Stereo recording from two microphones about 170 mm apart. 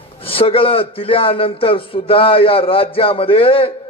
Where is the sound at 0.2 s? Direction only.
35° left (ahead or behind).